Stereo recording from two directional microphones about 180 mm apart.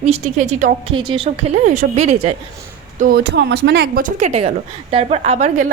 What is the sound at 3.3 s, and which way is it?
A woman's voice, 70° right (ahead or behind).